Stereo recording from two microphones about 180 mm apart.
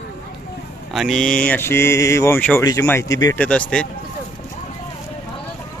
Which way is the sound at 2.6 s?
15° left (ahead or behind).